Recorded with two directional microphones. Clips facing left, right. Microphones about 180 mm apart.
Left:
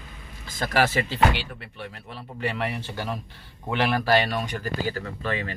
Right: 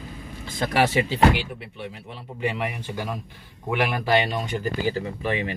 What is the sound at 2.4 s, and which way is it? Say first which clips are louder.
Speech: right 1 dB; 10° right (ahead or behind).